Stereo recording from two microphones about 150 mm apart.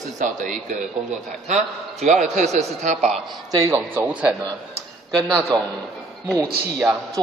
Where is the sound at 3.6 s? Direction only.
15° right (ahead or behind).